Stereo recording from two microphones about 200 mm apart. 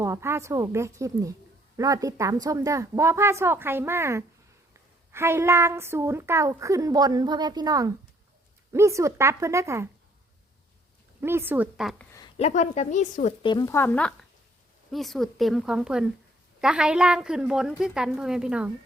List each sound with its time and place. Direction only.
0.0 s a woman's voice: 15° right (ahead or behind)
11.2 s a woman's voice: 10° right (ahead or behind)
12.4 s speech: 35° left (ahead or behind)
13.4 s a woman's voice: 20° left (ahead or behind); by 18.7 s 5° right (ahead or behind)